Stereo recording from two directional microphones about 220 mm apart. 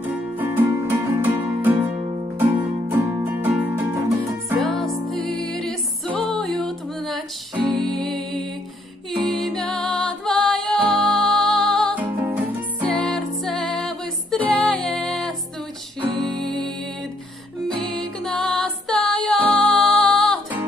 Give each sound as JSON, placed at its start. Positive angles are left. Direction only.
{"t": 0.0, "sound": "music", "side_deg": -10}
{"t": 2.9, "sound": "music", "side_deg": -10}
{"t": 4.5, "sound": "music", "side_deg": 0}
{"t": 12.1, "sound": "music", "side_deg": -10}
{"t": 12.9, "sound": "music", "side_deg": 5}
{"t": 16.0, "sound": "music", "side_deg": -20}
{"t": 16.3, "sound": "music", "side_deg": 0}
{"t": 17.8, "sound": "music", "side_deg": 0}